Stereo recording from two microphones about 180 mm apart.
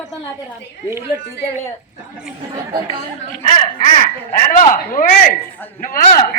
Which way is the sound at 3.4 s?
45° left (ahead or behind).